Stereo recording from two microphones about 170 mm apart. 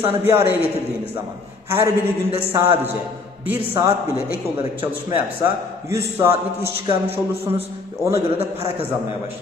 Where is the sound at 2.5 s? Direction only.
15° right (ahead or behind).